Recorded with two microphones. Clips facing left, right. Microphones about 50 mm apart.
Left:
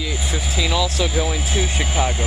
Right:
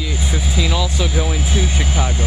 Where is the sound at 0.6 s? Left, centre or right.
Centre.